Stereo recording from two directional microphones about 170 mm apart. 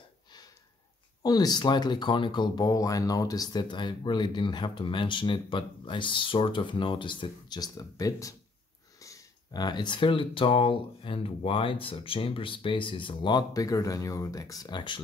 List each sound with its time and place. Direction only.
1.2 s speech: 25° left (ahead or behind)